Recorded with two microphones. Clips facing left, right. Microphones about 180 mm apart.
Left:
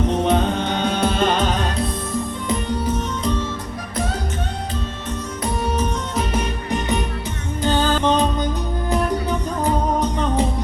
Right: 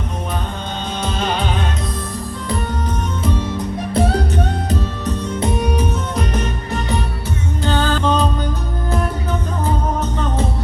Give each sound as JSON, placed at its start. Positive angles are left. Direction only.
{"t": 0.3, "sound": "music", "side_deg": 75}
{"t": 7.6, "sound": "music", "side_deg": 15}